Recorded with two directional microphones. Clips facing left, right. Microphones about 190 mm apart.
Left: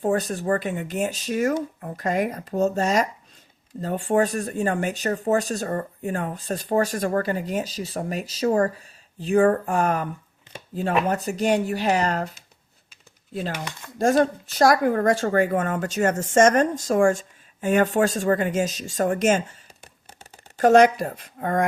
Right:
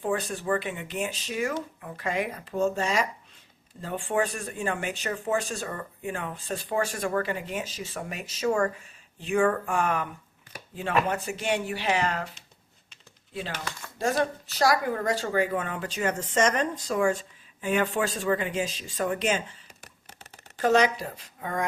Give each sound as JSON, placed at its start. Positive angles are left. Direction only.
{"t": 0.0, "sound": "speech", "side_deg": 40}
{"t": 13.5, "sound": "speech", "side_deg": 15}
{"t": 14.4, "sound": "speech", "side_deg": 50}
{"t": 20.6, "sound": "speech", "side_deg": 50}